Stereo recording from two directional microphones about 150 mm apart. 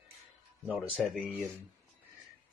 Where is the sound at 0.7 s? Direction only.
5° right (ahead or behind).